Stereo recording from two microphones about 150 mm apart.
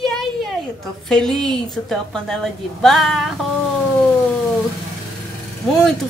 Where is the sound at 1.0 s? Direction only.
5° left (ahead or behind).